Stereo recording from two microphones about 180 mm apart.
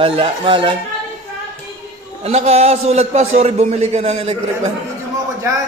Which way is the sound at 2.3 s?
35° right (ahead or behind).